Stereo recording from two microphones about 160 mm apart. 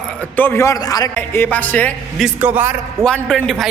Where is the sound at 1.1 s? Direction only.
10° left (ahead or behind).